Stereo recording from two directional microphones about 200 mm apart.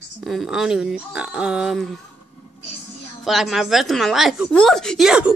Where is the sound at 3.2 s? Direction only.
Centre (ahead or behind).